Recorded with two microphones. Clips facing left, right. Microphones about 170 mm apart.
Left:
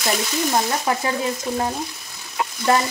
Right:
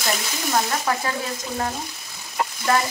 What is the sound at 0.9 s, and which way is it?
Speech, 20° left (ahead or behind).